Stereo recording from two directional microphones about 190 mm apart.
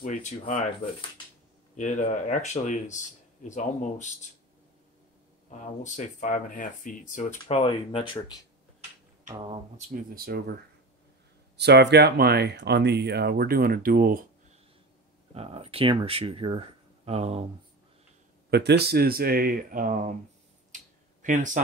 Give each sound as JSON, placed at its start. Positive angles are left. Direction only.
{"t": 0.0, "sound": "speech", "side_deg": 40}
{"t": 1.8, "sound": "speech", "side_deg": 40}
{"t": 5.5, "sound": "speech", "side_deg": 40}
{"t": 9.5, "sound": "speech", "side_deg": -40}
{"t": 10.1, "sound": "speech", "side_deg": -55}
{"t": 11.5, "sound": "speech", "side_deg": -65}
{"t": 15.3, "sound": "speech", "side_deg": -30}
{"t": 18.5, "sound": "speech", "side_deg": -60}
{"t": 20.7, "sound": "a sound", "side_deg": -40}